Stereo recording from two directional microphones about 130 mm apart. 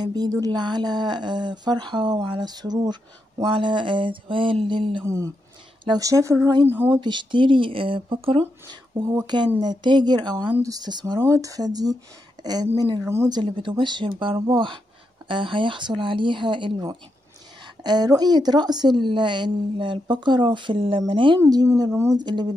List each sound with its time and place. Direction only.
0.0 s speech: 30° right (ahead or behind)
5.0 s speech: 25° right (ahead or behind)
7.0 s speech: 35° right (ahead or behind)
13.0 s speech: 20° right (ahead or behind)
13.3 s speech: 40° right (ahead or behind)
21.5 s speech: 30° right (ahead or behind)
22.2 s speech: 35° right (ahead or behind)